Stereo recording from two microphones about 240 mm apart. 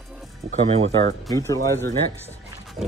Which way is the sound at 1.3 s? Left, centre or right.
Centre.